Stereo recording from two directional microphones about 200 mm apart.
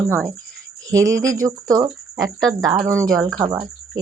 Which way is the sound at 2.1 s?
Centre (ahead or behind).